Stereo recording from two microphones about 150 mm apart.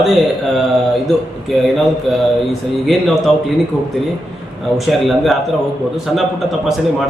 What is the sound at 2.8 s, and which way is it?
Speech, centre (ahead or behind).